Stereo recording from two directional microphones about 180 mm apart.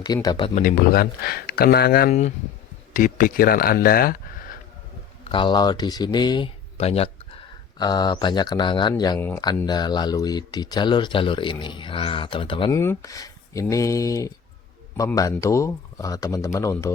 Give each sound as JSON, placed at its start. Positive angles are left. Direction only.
{"t": 0.0, "sound": "speech", "side_deg": 20}
{"t": 0.5, "sound": "speech", "side_deg": 50}
{"t": 5.2, "sound": "speech", "side_deg": 30}
{"t": 7.8, "sound": "speech", "side_deg": 25}
{"t": 12.7, "sound": "speech", "side_deg": 15}